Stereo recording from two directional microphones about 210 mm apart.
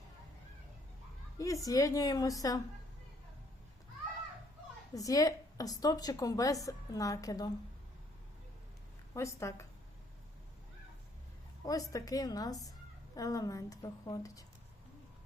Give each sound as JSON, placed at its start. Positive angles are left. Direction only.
{"t": 1.4, "sound": "a woman's voice", "side_deg": 15}
{"t": 4.9, "sound": "a woman's voice", "side_deg": 15}
{"t": 9.1, "sound": "a woman's voice", "side_deg": 15}
{"t": 11.6, "sound": "a woman's voice", "side_deg": 15}